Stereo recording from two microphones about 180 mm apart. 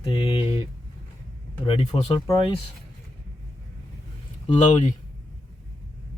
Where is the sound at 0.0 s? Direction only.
30° left (ahead or behind).